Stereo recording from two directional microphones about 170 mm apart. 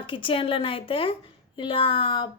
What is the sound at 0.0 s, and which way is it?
A woman's voice, 30° left (ahead or behind).